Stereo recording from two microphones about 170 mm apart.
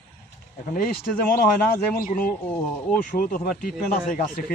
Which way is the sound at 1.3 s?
60° left (ahead or behind).